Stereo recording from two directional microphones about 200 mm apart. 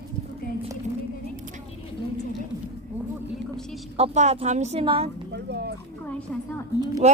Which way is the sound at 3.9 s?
35° right (ahead or behind).